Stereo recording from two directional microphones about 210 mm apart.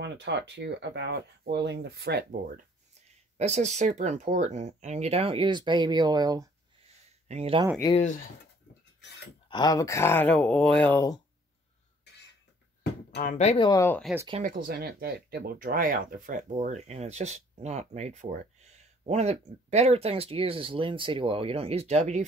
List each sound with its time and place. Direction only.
0.0 s speech: 55° right (ahead or behind)
3.3 s speech: 30° right (ahead or behind)
7.2 s speech: 30° right (ahead or behind)
7.9 s speech: 35° left (ahead or behind)
9.5 s speech: 20° left (ahead or behind)
13.1 s speech: 40° left (ahead or behind)
13.7 s speech: 10° left (ahead or behind)
14.4 s speech: 40° right (ahead or behind)